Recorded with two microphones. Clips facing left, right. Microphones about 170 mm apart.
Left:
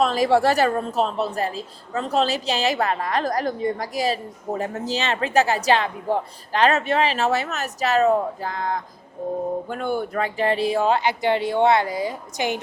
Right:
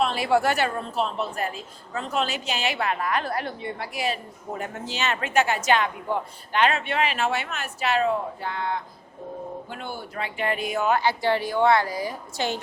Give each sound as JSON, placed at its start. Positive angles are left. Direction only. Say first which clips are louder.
{"t": 0.0, "sound": "a woman's voice", "louder": "left 4 dB", "side_deg": 40}
{"t": 9.6, "sound": "speech", "louder": "left 10 dB", "side_deg": 50}